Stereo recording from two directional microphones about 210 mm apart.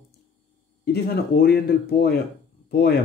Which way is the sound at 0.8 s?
50° left (ahead or behind).